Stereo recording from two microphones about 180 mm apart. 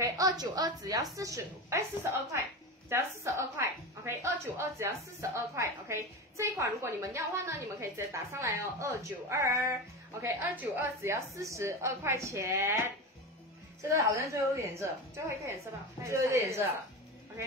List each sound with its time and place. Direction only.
0.0 s a woman's voice: 20° right (ahead or behind)